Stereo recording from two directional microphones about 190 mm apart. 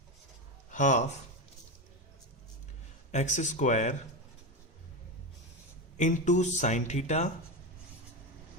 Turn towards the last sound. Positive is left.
turn(degrees=35)  # may be behind; listen again after turning